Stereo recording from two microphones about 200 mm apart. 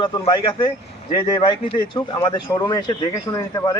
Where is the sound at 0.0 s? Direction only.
20° left (ahead or behind).